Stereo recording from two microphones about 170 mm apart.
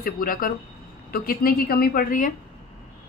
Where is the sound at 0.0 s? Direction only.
55° left (ahead or behind).